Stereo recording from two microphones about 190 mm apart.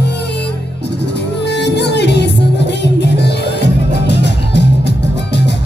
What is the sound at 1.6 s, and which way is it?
Music, 65° left (ahead or behind).